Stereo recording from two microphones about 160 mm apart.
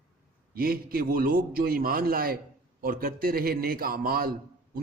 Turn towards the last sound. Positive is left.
turn(degrees=-65)  # may be behind; listen again after turning